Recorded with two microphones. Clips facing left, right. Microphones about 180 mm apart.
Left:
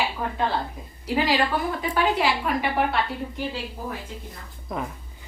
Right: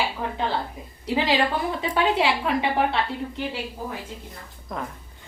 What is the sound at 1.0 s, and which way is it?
A woman's voice, 25° right (ahead or behind).